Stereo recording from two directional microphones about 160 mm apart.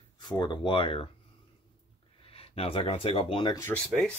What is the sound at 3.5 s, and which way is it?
Speech, 20° left (ahead or behind).